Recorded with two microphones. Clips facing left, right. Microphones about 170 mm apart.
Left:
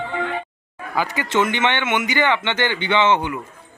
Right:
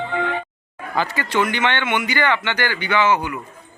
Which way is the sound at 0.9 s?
15° left (ahead or behind).